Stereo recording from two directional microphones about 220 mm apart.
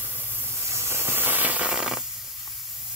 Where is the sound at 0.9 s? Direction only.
10° right (ahead or behind).